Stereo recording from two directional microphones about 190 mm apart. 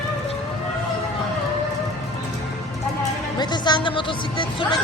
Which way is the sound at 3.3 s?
20° left (ahead or behind).